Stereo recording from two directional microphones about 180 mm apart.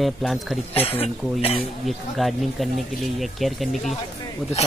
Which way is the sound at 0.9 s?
35° left (ahead or behind).